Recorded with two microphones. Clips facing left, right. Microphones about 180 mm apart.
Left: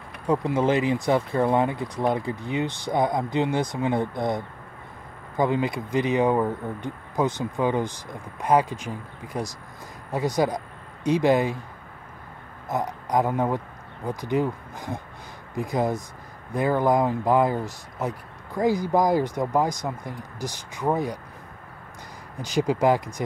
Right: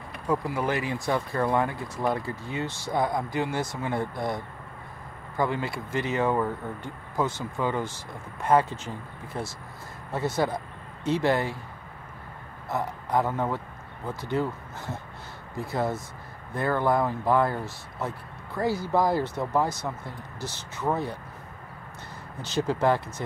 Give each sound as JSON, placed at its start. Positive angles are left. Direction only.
{"t": 0.3, "sound": "speech", "side_deg": 20}
{"t": 12.6, "sound": "a man's voice", "side_deg": 15}
{"t": 22.4, "sound": "speech", "side_deg": 15}